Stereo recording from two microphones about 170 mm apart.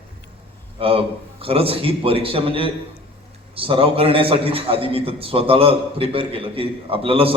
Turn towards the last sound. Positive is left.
turn(degrees=-35)  # may be behind; listen again after turning